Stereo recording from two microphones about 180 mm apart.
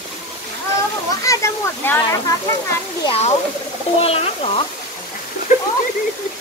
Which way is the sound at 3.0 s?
35° left (ahead or behind).